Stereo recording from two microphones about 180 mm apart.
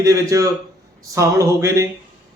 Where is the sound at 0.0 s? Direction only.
20° right (ahead or behind).